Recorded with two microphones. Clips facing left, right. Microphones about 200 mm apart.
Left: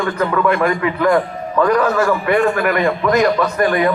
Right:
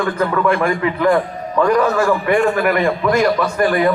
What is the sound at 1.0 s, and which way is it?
Speech, 10° right (ahead or behind).